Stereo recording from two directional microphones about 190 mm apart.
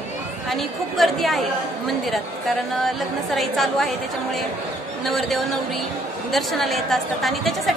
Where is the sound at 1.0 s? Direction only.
Centre (ahead or behind).